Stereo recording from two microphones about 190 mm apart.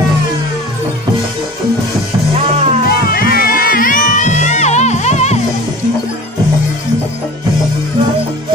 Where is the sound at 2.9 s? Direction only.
50° left (ahead or behind); by 5.4 s 35° left (ahead or behind).